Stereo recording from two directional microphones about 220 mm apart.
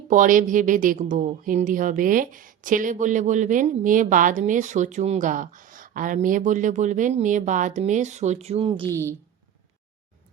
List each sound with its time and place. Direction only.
0.1 s a woman's voice: 35° right (ahead or behind)